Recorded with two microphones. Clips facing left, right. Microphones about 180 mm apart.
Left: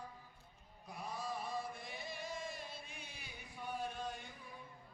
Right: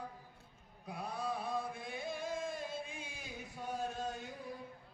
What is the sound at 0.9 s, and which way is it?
Chant, 60° right (ahead or behind).